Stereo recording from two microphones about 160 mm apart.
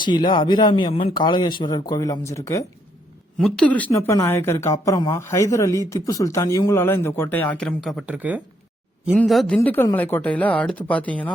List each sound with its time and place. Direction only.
0.0 s speech: 30° left (ahead or behind)
3.4 s speech: 5° left (ahead or behind); by 8.4 s 10° right (ahead or behind)
9.1 s speech: centre (ahead or behind)
9.6 s speech: 15° left (ahead or behind)